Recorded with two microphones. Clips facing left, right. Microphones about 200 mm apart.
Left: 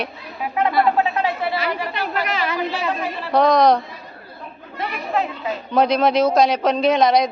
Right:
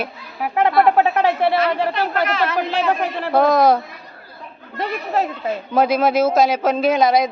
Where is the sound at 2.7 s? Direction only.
60° right (ahead or behind).